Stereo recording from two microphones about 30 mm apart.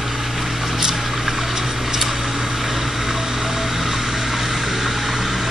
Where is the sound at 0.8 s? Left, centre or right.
Centre.